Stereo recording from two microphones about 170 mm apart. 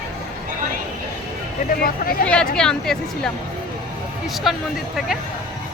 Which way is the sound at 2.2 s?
5° left (ahead or behind).